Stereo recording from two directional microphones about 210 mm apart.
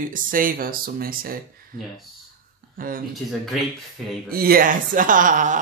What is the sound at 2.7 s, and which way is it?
Speech, 40° right (ahead or behind).